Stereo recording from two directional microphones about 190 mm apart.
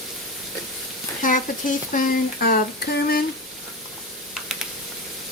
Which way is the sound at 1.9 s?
50° left (ahead or behind).